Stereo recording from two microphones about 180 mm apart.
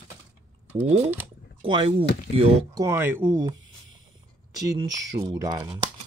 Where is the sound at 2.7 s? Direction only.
15° right (ahead or behind).